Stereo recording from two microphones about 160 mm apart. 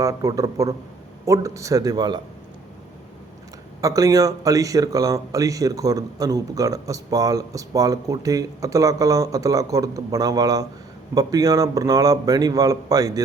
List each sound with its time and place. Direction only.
0.0 s speech: 20° right (ahead or behind)
3.8 s speech: 20° right (ahead or behind)